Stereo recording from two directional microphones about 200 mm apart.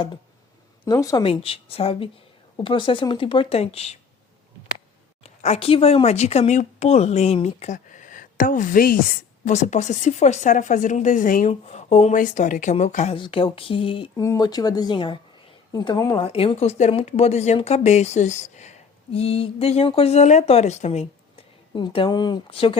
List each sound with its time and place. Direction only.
0.9 s speech: 20° left (ahead or behind)
1.2 s speech: 30° left (ahead or behind)
5.2 s speech: 35° left (ahead or behind)
13.1 s speech: 25° left (ahead or behind)